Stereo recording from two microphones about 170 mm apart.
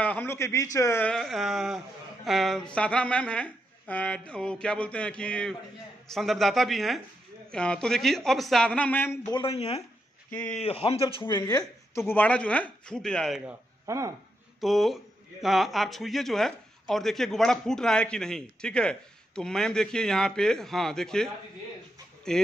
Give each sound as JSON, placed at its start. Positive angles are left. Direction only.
{"t": 0.0, "sound": "a sound", "side_deg": 10}
{"t": 0.7, "sound": "speech", "side_deg": 15}
{"t": 9.3, "sound": "speech", "side_deg": 35}
{"t": 13.5, "sound": "speech", "side_deg": -20}
{"t": 14.6, "sound": "speech", "side_deg": 0}
{"t": 22.3, "sound": "speech", "side_deg": 5}